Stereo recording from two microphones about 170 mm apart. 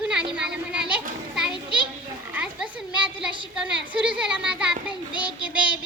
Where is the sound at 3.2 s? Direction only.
5° right (ahead or behind).